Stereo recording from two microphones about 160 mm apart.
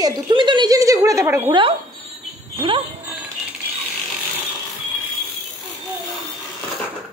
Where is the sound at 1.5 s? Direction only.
30° right (ahead or behind).